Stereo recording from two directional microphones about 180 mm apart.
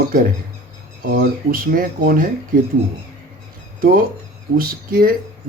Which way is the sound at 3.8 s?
50° right (ahead or behind).